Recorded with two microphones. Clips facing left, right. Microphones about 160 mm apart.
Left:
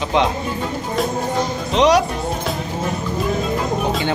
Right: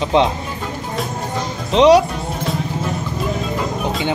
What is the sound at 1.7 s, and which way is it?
Speech, 25° right (ahead or behind).